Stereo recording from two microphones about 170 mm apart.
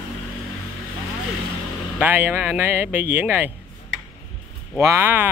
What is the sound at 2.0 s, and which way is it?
Speech, 10° right (ahead or behind).